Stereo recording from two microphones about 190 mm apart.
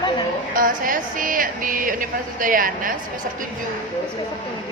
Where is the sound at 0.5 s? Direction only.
45° right (ahead or behind).